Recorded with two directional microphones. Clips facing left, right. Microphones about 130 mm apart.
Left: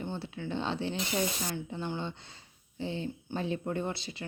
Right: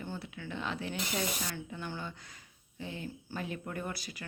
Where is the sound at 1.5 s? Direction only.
25° left (ahead or behind).